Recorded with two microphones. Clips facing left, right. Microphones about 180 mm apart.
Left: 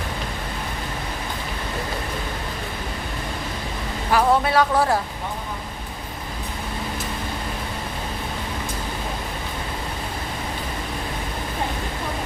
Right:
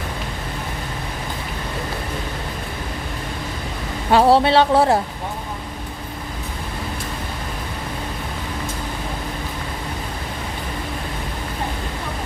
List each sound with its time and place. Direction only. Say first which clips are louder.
4.1 s speech: right 5 dB; 30° right (ahead or behind)